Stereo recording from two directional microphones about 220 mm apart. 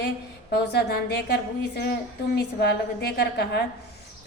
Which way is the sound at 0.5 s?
50° left (ahead or behind).